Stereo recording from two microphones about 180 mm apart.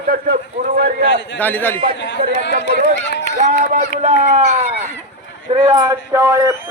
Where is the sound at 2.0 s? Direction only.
80° left.